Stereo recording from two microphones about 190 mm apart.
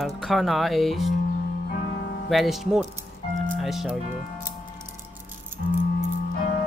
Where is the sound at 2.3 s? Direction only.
Centre (ahead or behind).